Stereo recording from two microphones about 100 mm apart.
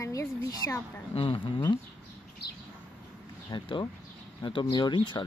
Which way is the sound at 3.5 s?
50° left (ahead or behind).